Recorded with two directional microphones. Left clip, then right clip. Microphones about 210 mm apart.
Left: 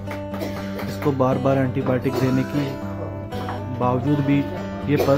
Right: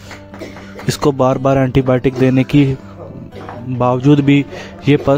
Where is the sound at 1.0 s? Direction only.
50° right (ahead or behind).